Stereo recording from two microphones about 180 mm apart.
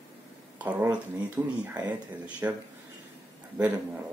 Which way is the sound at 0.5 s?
10° right (ahead or behind).